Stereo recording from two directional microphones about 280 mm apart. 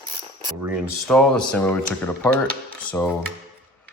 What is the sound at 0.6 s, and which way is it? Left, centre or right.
Speech, centre.